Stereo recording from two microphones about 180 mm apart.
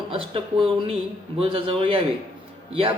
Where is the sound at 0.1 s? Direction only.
30° right (ahead or behind).